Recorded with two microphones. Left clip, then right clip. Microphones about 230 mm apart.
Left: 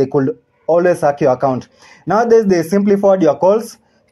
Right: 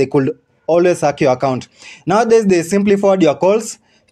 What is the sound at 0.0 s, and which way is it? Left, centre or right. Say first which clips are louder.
Speech: even; right.